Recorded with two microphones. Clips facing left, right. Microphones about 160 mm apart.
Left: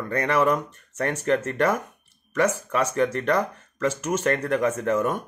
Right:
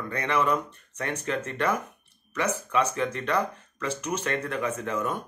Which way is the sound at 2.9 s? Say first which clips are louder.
Left 5 dB; 45° left (ahead or behind).